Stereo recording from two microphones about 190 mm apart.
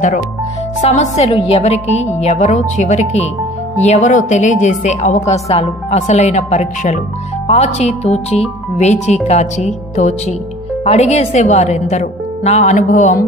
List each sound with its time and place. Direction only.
0.7 s a woman's voice: 40° left (ahead or behind)